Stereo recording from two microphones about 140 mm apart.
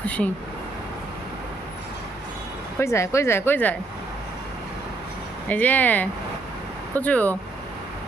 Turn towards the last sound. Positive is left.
turn(degrees=10)  # may be behind; listen again after turning